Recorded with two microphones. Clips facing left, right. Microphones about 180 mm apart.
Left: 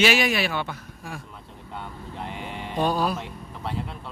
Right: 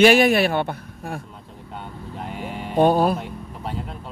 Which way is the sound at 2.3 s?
5° right (ahead or behind).